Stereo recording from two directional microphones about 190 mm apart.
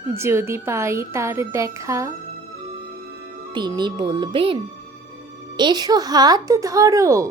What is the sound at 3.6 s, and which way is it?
A woman's voice, 25° right (ahead or behind).